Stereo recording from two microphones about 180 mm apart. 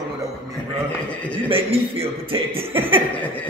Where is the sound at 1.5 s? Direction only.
30° right (ahead or behind).